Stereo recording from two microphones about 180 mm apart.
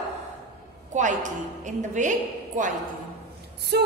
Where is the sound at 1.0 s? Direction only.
45° right (ahead or behind).